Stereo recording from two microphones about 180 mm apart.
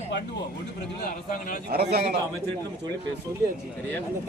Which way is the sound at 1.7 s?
60° right (ahead or behind).